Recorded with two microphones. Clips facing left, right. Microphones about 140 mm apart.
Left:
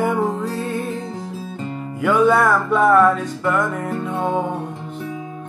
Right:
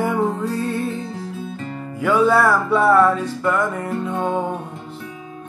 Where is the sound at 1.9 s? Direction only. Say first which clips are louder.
Left 1 dB; centre (ahead or behind).